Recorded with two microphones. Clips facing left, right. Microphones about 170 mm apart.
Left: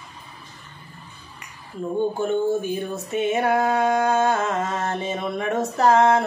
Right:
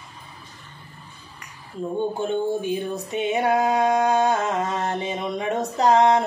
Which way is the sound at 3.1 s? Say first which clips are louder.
Left 1 dB; 15° right (ahead or behind).